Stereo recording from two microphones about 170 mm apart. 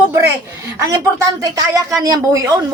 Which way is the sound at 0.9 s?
20° right (ahead or behind).